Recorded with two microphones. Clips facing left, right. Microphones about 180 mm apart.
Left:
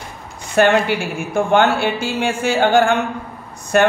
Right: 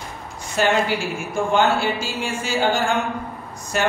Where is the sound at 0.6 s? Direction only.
60° left (ahead or behind).